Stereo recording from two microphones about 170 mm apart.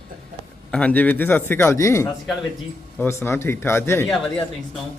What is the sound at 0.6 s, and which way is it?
Speech, 5° left (ahead or behind).